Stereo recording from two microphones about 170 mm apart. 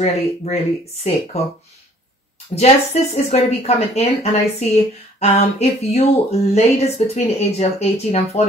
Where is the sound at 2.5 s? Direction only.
40° left (ahead or behind).